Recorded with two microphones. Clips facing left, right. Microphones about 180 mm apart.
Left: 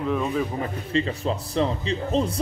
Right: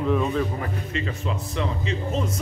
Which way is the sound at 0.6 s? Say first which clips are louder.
Left 4 dB; 35° left (ahead or behind).